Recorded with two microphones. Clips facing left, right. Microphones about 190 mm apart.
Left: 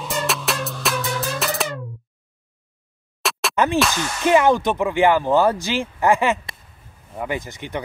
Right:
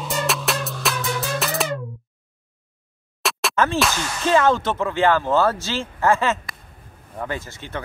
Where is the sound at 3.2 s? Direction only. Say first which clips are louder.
Even; centre (ahead or behind).